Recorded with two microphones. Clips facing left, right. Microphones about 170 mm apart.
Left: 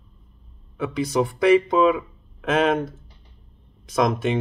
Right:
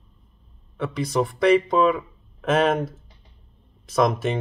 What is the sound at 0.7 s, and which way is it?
Speech, centre (ahead or behind).